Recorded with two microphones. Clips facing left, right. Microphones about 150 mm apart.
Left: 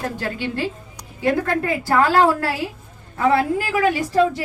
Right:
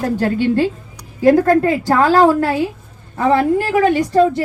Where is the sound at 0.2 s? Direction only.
45° right (ahead or behind).